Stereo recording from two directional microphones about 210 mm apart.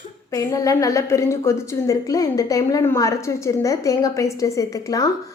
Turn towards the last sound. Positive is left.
turn(degrees=15)  # may be behind; listen again after turning